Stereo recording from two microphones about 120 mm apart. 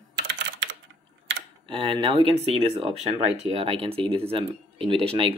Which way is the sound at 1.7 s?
45° right (ahead or behind).